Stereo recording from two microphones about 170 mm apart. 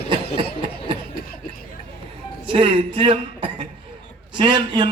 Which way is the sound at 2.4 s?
30° right (ahead or behind).